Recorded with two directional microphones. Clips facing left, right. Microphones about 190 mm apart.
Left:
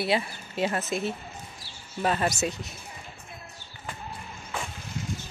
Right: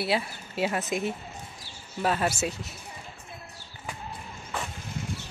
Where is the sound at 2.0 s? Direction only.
5° right (ahead or behind).